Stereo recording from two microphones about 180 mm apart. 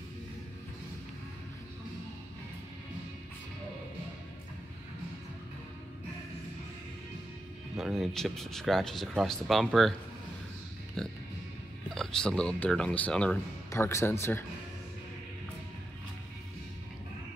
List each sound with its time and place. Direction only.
7.7 s speech: centre (ahead or behind)
11.0 s speech: 5° left (ahead or behind)